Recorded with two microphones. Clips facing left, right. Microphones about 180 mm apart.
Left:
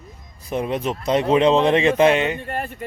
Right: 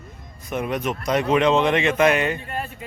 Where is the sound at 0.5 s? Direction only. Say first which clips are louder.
Left 2 dB; 30° left (ahead or behind).